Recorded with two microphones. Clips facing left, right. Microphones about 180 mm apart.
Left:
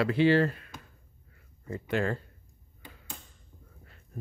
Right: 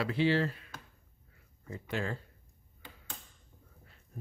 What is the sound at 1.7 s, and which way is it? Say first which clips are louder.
Speech: left 7 dB; 60° left (ahead or behind).